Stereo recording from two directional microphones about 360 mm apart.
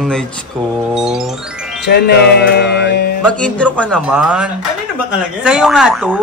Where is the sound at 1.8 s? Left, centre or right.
Left.